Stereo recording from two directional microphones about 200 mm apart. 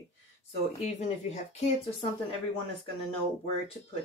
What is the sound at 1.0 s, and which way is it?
Speech, 35° left (ahead or behind).